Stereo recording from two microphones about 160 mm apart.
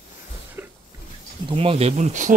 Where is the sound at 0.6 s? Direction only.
15° right (ahead or behind).